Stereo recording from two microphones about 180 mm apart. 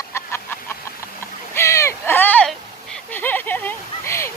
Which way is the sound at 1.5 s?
15° left (ahead or behind).